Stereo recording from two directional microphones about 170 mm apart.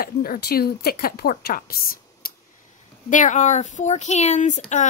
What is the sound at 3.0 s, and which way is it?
Speech, 50° left (ahead or behind).